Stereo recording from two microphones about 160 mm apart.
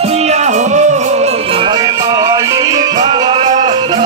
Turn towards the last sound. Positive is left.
turn(degrees=-30)  # may be behind; listen again after turning